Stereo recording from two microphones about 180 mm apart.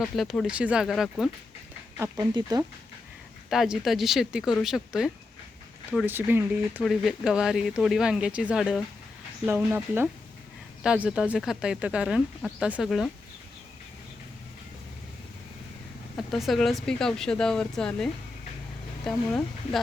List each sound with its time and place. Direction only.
0.0 s speech: centre (ahead or behind)
2.0 s speech: 15° right (ahead or behind)
3.5 s speech: centre (ahead or behind)
16.1 s speech: centre (ahead or behind)